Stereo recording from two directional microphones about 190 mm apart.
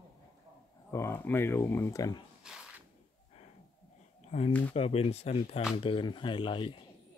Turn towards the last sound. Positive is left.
turn(degrees=25)  # may be behind; listen again after turning